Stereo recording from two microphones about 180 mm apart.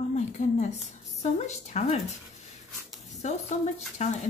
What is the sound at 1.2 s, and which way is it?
Speech, 40° left (ahead or behind).